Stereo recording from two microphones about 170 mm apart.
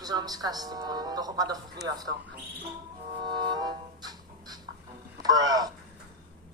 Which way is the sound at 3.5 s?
25° right (ahead or behind).